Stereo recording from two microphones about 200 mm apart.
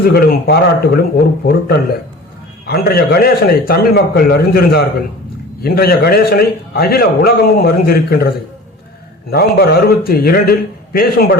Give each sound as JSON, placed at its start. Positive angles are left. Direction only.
{"t": 0.0, "sound": "a man's voice", "side_deg": 50}
{"t": 2.6, "sound": "a man's voice", "side_deg": 50}
{"t": 9.3, "sound": "a man's voice", "side_deg": 50}